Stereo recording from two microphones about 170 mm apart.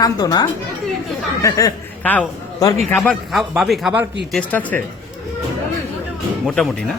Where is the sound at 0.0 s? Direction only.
25° left (ahead or behind).